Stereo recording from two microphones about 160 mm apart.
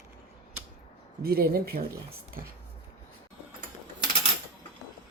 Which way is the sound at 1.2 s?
70° right (ahead or behind).